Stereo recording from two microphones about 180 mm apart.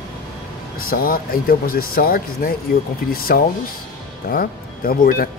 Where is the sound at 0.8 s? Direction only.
55° left (ahead or behind).